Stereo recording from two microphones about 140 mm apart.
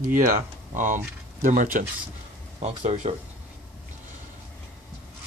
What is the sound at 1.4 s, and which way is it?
Speech, 75° right (ahead or behind).